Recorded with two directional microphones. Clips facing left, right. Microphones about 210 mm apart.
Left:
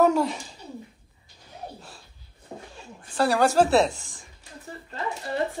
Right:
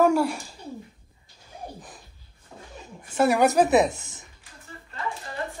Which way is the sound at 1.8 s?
15° right (ahead or behind).